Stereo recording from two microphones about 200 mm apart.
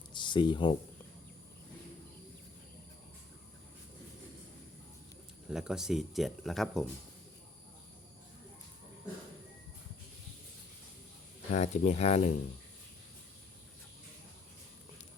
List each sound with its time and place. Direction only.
0.1 s speech: 25° left (ahead or behind)
5.5 s speech: 5° right (ahead or behind)
11.5 s speech: 35° left (ahead or behind)